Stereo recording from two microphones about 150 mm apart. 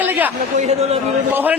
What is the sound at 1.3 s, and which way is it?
Speech, 15° right (ahead or behind).